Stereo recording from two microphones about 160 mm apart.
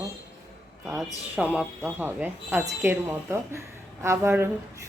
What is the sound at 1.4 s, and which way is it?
A woman's voice, 10° right (ahead or behind).